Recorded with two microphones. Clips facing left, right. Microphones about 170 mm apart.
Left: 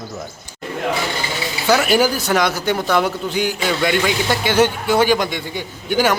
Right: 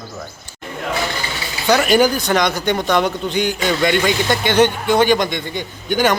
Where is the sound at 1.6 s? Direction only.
5° left (ahead or behind).